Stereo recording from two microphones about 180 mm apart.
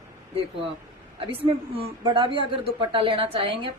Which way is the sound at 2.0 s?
30° right (ahead or behind).